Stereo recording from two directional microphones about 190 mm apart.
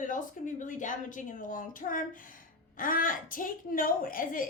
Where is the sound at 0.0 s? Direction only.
45° left (ahead or behind).